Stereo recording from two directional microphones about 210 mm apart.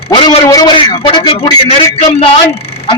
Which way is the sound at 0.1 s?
20° left (ahead or behind).